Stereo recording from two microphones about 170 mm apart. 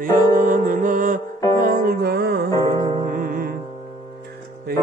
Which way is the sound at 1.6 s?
60° right (ahead or behind).